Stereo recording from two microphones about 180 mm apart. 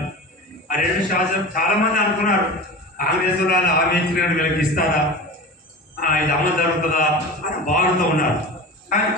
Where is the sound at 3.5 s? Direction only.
60° left (ahead or behind).